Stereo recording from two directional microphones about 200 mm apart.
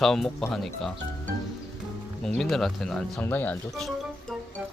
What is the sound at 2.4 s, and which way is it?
Speech, centre (ahead or behind).